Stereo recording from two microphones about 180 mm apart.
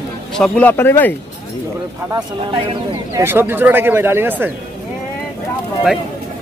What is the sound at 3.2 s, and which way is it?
Speech, 10° right (ahead or behind).